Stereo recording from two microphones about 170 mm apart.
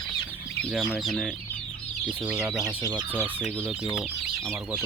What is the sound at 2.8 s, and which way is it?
Speech, 25° right (ahead or behind).